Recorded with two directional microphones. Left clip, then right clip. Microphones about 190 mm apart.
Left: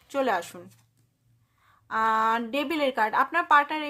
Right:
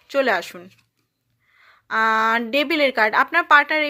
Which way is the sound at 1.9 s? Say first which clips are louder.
Right 5 dB; 20° right (ahead or behind).